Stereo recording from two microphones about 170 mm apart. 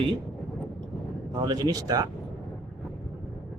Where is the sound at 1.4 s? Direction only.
20° right (ahead or behind).